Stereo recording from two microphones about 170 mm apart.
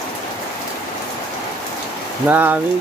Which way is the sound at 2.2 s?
10° right (ahead or behind).